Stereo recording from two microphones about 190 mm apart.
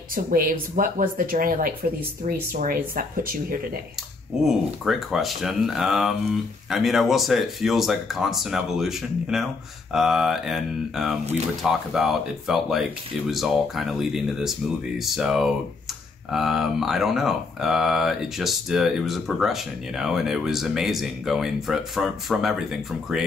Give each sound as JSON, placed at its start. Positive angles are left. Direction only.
{"t": 0.1, "sound": "speech", "side_deg": -50}
{"t": 4.5, "sound": "speech", "side_deg": 0}